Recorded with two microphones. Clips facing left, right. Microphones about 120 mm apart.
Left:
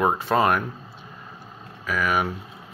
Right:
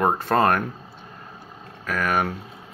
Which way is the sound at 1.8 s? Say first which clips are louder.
Even; 50° right (ahead or behind).